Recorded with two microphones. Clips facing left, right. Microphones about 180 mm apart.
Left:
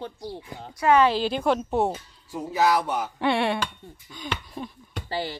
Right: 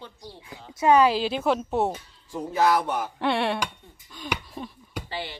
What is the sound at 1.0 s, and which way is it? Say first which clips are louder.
Speech: even; 5° right (ahead or behind).